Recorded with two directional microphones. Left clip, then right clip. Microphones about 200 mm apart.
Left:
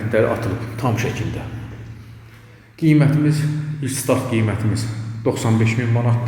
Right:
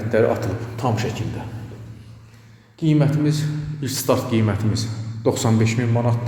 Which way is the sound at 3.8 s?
15° right (ahead or behind).